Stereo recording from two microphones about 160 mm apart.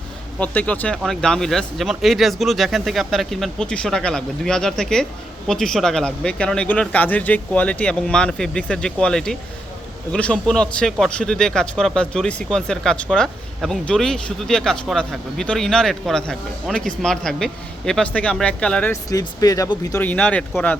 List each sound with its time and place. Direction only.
0.3 s speech: 10° left (ahead or behind)
19.1 s speech: 20° left (ahead or behind)
20.1 s speech: 10° left (ahead or behind)